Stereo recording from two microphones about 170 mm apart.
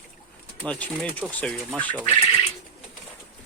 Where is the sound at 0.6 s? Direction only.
5° left (ahead or behind).